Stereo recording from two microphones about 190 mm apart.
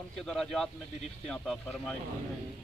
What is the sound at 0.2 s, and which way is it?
A man's voice, 5° left (ahead or behind).